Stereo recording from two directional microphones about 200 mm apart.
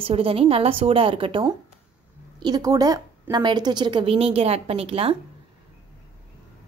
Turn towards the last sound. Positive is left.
turn(degrees=-30)  # may be behind; listen again after turning